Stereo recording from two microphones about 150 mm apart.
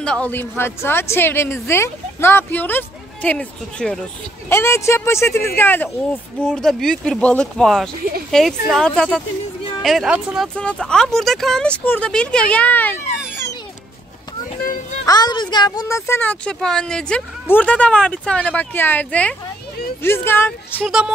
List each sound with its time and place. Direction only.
0.0 s speech: 5° left (ahead or behind)
4.5 s speech: 15° left (ahead or behind)
14.6 s children playing: 70° left (ahead or behind)
15.0 s speech: 25° left (ahead or behind)
20.8 s speech: centre (ahead or behind)